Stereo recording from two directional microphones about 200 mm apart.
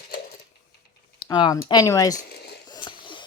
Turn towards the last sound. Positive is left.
turn(degrees=25)  # may be behind; listen again after turning